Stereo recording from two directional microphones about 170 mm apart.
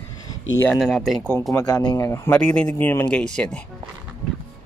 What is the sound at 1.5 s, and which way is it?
Speech, 15° left (ahead or behind).